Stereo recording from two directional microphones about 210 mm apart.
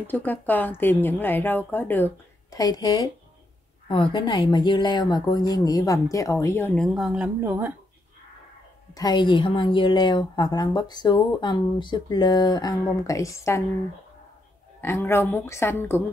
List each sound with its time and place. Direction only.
0.0 s a woman's voice: 10° left (ahead or behind); by 7.7 s 10° right (ahead or behind)
8.9 s a woman's voice: 20° left (ahead or behind)
14.8 s speech: 10° left (ahead or behind)